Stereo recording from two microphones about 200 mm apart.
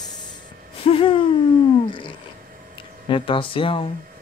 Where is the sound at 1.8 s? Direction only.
25° left (ahead or behind).